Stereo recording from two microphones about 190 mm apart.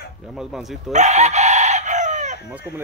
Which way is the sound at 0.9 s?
35° right (ahead or behind).